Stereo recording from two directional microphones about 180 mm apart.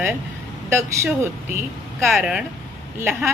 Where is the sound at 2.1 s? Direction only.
Centre (ahead or behind).